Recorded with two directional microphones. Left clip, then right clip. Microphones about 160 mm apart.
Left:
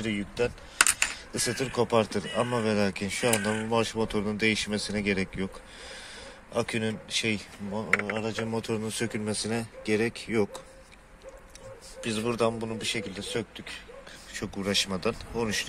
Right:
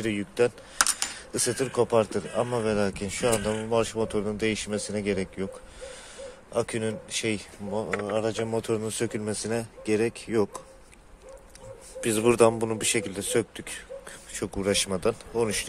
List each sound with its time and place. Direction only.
0.0 s speech: 30° right (ahead or behind)
1.3 s speech: 15° right (ahead or behind)
7.7 s a man's voice: 30° right (ahead or behind)
8.5 s speech: 20° right (ahead or behind)
12.0 s a man's voice: 40° right (ahead or behind)
14.3 s speech: 25° right (ahead or behind)